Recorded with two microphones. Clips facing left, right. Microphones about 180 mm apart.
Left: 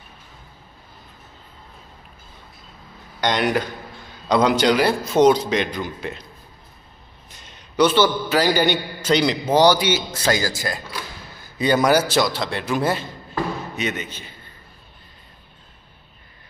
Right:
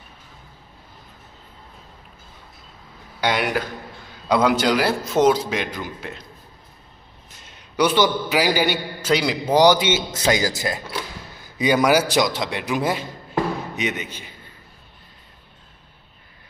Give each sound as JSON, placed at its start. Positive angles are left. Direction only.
{"t": 3.2, "sound": "a man's voice", "side_deg": -5}
{"t": 7.3, "sound": "a man's voice", "side_deg": -5}